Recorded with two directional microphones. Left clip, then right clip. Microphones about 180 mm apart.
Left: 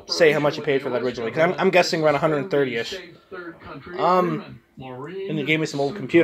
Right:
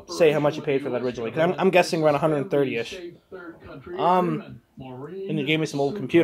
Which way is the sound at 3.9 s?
5° right (ahead or behind).